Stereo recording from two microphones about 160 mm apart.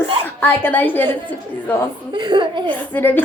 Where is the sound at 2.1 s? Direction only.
30° right (ahead or behind).